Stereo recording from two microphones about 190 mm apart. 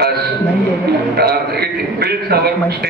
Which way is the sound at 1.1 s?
55° right (ahead or behind).